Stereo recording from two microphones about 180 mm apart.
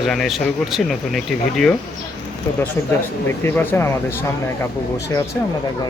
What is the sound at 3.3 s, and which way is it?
Speech, 10° left (ahead or behind).